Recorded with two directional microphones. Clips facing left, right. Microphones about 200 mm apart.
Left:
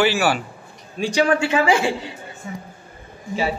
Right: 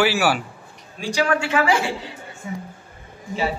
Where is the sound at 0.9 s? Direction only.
20° left (ahead or behind).